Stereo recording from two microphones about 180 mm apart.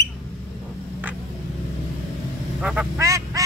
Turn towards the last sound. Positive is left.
turn(degrees=-15)  # may be behind; listen again after turning